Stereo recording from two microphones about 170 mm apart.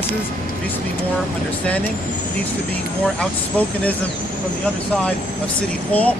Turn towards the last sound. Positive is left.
turn(degrees=10)  # may be behind; listen again after turning